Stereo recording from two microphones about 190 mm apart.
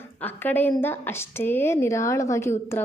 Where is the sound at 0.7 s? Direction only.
10° left (ahead or behind).